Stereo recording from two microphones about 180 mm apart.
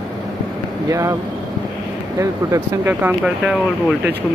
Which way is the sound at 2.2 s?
15° right (ahead or behind).